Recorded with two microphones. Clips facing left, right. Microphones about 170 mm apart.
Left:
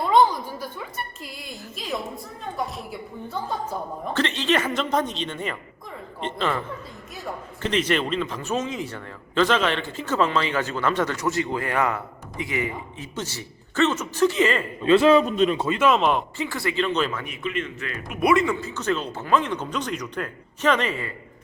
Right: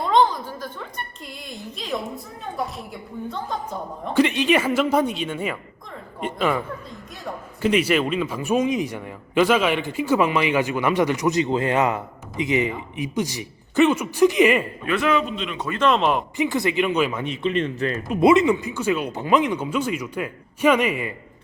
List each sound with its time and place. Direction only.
0.1 s a woman's voice: 10° left (ahead or behind)
4.1 s a man's voice: 10° right (ahead or behind)
14.8 s a man's voice: 30° left (ahead or behind)
15.5 s speech: 25° left (ahead or behind)
15.8 s a man's voice: centre (ahead or behind)
16.4 s a man's voice: 20° right (ahead or behind)
17.2 s a man's voice: 30° right (ahead or behind); by 21.1 s 10° right (ahead or behind)